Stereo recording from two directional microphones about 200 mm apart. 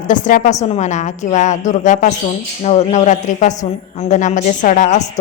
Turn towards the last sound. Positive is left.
turn(degrees=35)  # may be behind; listen again after turning